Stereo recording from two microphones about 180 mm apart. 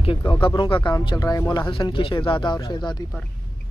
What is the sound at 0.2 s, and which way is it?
Speech, 20° left (ahead or behind).